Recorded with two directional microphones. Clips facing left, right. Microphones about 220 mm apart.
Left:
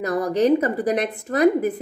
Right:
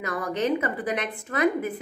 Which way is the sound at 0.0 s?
40° left (ahead or behind).